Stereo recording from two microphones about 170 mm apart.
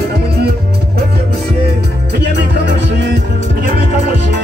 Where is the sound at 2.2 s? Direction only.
80° right.